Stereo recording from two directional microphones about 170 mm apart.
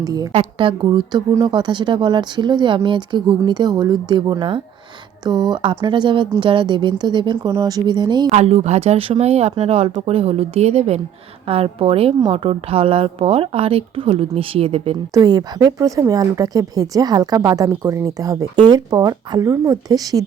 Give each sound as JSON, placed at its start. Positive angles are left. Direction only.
{"t": 0.0, "sound": "speech", "side_deg": -20}
{"t": 8.3, "sound": "a woman's voice", "side_deg": -40}
{"t": 15.1, "sound": "speech", "side_deg": -25}